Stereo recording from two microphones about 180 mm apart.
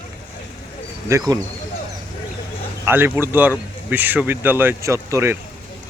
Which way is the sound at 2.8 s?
10° right (ahead or behind).